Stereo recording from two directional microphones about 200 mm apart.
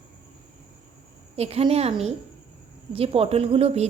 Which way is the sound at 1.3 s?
30° right (ahead or behind).